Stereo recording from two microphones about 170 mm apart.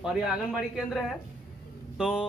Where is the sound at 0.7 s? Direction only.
Centre (ahead or behind).